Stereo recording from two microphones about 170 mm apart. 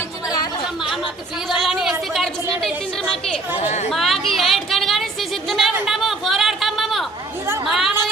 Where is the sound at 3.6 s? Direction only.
45° left (ahead or behind).